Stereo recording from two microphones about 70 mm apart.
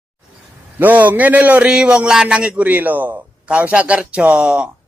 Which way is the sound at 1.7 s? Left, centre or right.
Centre.